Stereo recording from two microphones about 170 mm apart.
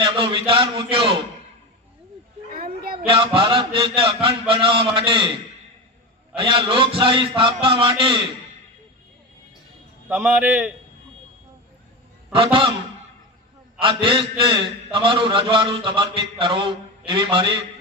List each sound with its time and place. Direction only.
0.0 s a man's voice: 30° right (ahead or behind)
3.1 s a man's voice: 30° right (ahead or behind)
6.3 s a man's voice: 30° right (ahead or behind)
10.1 s a man's voice: 10° right (ahead or behind)
12.3 s a man's voice: 30° right (ahead or behind)
13.8 s a man's voice: 30° right (ahead or behind)